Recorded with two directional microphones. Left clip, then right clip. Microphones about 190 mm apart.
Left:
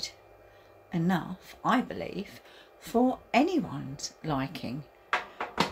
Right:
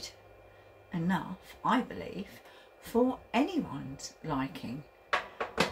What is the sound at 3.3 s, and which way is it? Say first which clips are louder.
A woman's voice: left 5 dB; 40° left (ahead or behind).